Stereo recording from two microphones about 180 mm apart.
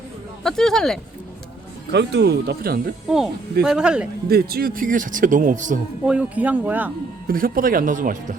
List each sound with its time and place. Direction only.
0.4 s speech: 5° left (ahead or behind)
1.9 s speech: 70° right (ahead or behind)
3.6 s speech: 5° right (ahead or behind)
4.3 s a man's voice: 60° right (ahead or behind)
6.1 s speech: 5° right (ahead or behind)
7.3 s a man's voice: 55° right (ahead or behind)